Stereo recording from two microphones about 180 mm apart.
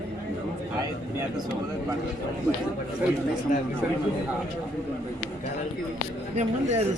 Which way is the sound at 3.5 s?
50° left (ahead or behind).